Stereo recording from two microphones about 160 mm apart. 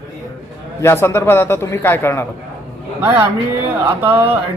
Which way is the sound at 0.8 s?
15° left (ahead or behind).